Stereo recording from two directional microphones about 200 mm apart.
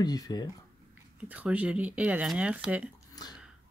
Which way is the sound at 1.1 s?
5° right (ahead or behind).